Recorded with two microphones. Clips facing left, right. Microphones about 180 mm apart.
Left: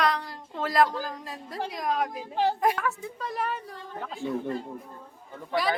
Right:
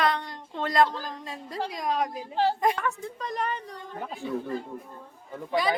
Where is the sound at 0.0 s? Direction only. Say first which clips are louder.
Even; centre (ahead or behind).